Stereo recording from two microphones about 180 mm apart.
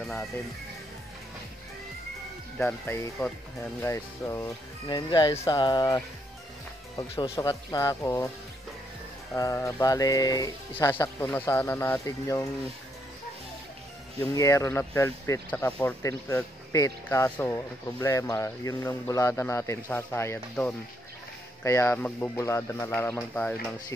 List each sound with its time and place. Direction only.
0.0 s speech: centre (ahead or behind)
2.6 s speech: 10° left (ahead or behind)
7.3 s speech: 20° left (ahead or behind)
9.3 s mantra: 15° left (ahead or behind)
10.7 s speech: 10° left (ahead or behind)
14.2 s speech: 15° left (ahead or behind)